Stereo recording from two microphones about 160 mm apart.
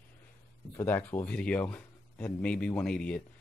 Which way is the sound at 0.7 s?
15° left (ahead or behind).